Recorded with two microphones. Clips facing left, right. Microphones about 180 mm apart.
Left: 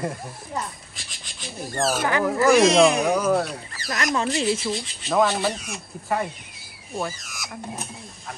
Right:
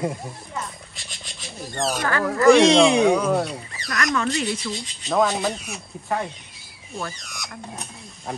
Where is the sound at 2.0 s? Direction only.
15° left (ahead or behind).